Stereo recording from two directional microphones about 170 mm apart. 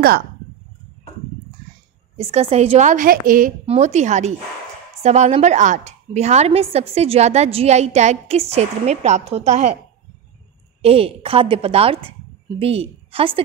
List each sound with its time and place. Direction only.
2.1 s a woman's voice: 40° right (ahead or behind); by 3.5 s 55° right (ahead or behind)
3.6 s a woman's voice: 40° right (ahead or behind)
10.8 s a woman's voice: 35° right (ahead or behind)